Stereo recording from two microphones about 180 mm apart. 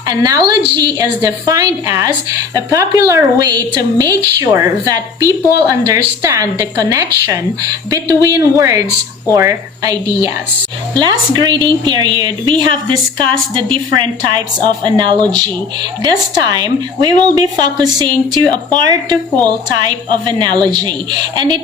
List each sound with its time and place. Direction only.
0.1 s a woman's voice: 20° right (ahead or behind)